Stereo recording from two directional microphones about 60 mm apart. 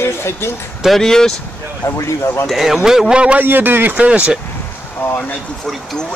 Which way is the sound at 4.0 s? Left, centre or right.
Right.